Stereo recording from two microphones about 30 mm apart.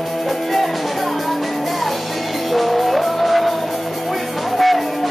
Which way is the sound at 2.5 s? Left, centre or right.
Centre.